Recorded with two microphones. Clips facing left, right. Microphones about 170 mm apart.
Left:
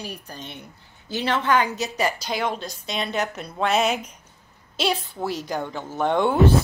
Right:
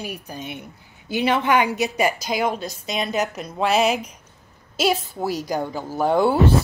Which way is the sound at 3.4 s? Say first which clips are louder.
Right 2 dB; 5° right (ahead or behind).